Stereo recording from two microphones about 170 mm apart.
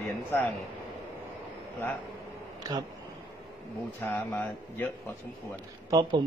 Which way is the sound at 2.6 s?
25° right (ahead or behind).